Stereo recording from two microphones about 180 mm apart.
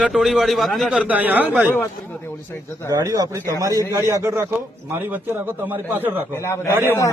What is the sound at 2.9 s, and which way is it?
A man's voice, 20° right (ahead or behind).